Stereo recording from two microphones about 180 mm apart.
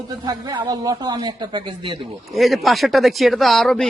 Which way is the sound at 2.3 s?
Centre (ahead or behind).